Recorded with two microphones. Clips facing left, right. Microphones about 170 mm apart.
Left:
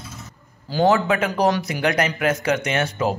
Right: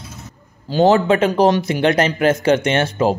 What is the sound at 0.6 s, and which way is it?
Speech, 25° right (ahead or behind).